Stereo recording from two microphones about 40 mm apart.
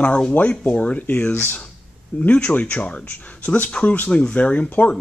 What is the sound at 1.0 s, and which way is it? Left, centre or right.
Speech, left.